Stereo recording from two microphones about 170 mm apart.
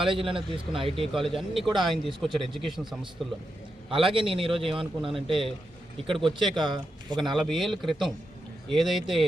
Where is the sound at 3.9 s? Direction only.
30° right (ahead or behind).